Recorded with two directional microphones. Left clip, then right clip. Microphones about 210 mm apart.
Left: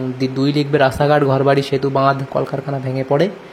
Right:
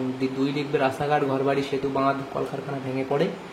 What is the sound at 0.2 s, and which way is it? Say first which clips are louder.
Speech: left 10 dB; 40° left (ahead or behind).